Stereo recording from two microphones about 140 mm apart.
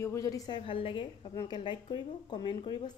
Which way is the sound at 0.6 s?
40° left (ahead or behind).